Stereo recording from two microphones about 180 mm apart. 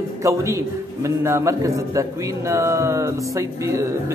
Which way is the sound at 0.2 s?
15° right (ahead or behind).